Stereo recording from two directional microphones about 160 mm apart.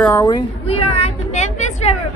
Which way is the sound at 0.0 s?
10° left (ahead or behind).